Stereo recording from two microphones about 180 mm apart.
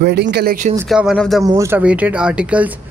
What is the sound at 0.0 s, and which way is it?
Speech, 65° right (ahead or behind).